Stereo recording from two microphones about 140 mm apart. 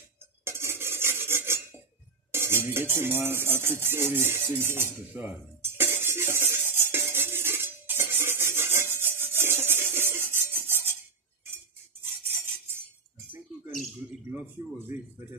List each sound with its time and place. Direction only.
0.4 s a sound: 15° right (ahead or behind)
2.3 s music: 15° right (ahead or behind)
14.3 s speech: 15° right (ahead or behind)